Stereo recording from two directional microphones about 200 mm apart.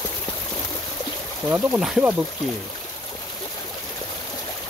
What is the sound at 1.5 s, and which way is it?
Speech, 5° right (ahead or behind).